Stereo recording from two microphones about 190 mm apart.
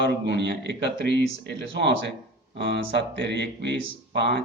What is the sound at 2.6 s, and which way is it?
Speech, 60° right (ahead or behind).